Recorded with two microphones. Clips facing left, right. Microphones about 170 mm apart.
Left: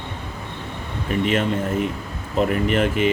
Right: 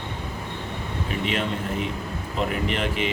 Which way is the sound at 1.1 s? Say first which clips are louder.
Left 8 dB; 45° left (ahead or behind).